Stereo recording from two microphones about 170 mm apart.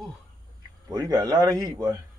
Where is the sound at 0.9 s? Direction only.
20° right (ahead or behind).